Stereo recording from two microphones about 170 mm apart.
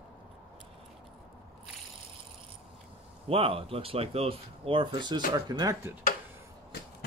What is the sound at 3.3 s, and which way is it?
Speech, 35° right (ahead or behind).